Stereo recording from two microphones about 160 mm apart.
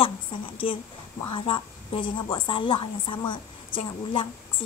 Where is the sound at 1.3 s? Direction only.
30° left (ahead or behind).